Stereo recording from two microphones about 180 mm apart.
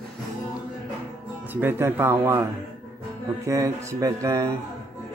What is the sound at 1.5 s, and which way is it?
A man's voice, 10° right (ahead or behind).